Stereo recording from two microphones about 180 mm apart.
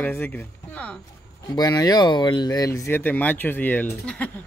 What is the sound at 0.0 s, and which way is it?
Speech, 10° left (ahead or behind).